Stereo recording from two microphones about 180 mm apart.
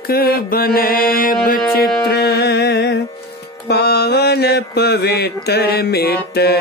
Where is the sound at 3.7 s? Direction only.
65° left (ahead or behind).